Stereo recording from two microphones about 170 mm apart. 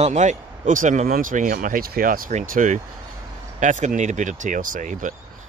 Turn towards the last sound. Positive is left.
turn(degrees=-50)  # may be behind; listen again after turning